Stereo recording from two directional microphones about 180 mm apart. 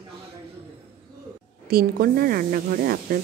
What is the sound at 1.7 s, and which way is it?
Speech, 55° right (ahead or behind).